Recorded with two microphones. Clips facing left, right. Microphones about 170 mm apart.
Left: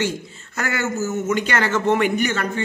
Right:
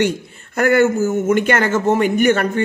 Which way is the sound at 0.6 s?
55° right (ahead or behind).